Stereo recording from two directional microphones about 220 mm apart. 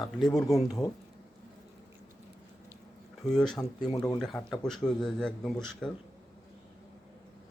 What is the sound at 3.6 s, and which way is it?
Speech, 20° left (ahead or behind).